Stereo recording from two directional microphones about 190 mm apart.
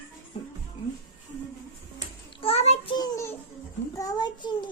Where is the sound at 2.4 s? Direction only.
30° left (ahead or behind).